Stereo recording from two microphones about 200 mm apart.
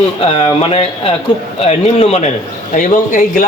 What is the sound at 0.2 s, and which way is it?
A man's voice, 30° left (ahead or behind).